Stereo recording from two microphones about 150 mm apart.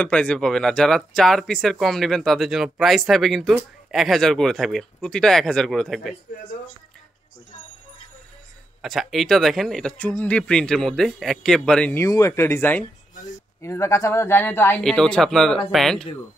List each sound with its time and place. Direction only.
0.0 s speech: 10° left (ahead or behind)
8.8 s speech: centre (ahead or behind)
12.0 s speech: 20° left (ahead or behind)
14.8 s speech: 5° left (ahead or behind)